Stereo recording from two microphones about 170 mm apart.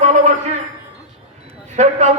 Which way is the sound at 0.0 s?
45° right (ahead or behind).